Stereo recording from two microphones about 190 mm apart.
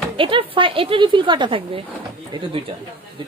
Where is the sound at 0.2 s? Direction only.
25° right (ahead or behind).